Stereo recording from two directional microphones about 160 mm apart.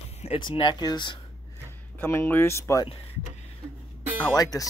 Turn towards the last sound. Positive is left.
turn(degrees=25)  # may be behind; listen again after turning